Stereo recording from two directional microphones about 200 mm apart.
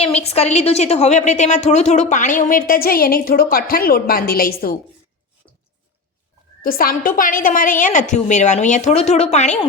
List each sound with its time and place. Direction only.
0.0 s a woman's voice: 30° left (ahead or behind); by 4.8 s 50° left (ahead or behind)
6.6 s a woman's voice: 45° left (ahead or behind)